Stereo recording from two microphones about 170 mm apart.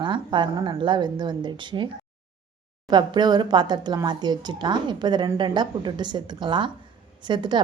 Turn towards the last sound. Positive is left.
turn(degrees=-25)  # may be behind; listen again after turning